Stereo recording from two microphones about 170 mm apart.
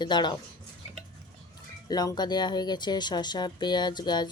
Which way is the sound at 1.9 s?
25° left (ahead or behind).